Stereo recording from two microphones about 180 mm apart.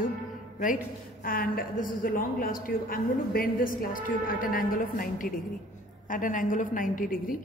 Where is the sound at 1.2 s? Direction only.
55° left (ahead or behind).